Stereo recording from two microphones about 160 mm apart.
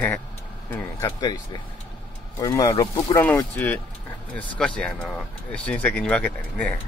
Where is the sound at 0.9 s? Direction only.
25° left (ahead or behind).